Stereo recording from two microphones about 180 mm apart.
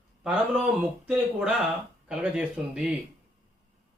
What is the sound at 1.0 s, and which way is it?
Speech, 5° right (ahead or behind).